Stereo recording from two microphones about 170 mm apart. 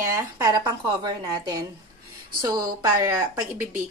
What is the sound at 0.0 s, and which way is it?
Speech, 20° right (ahead or behind).